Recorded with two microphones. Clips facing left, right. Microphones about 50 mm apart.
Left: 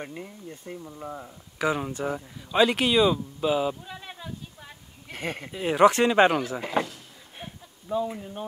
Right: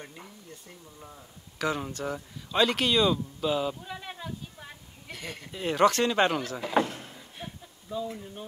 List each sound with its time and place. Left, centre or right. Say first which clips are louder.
0.5 s speech: left 9 dB; left
1.6 s speech: left 4 dB; centre
3.8 s a sound: right 1 dB; centre
5.1 s speech: left 7 dB; left
5.5 s speech: left 4 dB; centre
7.4 s a sound: even; left
7.9 s speech: left 7 dB; left